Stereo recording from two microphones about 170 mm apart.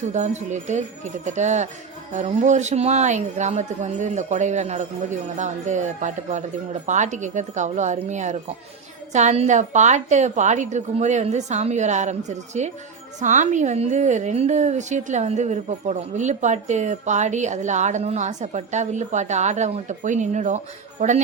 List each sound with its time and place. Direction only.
0.1 s a woman's voice: 45° right (ahead or behind)